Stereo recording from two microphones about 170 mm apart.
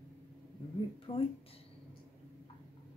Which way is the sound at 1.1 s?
30° left (ahead or behind).